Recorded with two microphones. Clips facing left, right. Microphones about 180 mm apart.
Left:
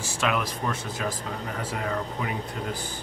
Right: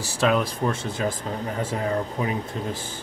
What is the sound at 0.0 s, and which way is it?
Speech, 35° right (ahead or behind).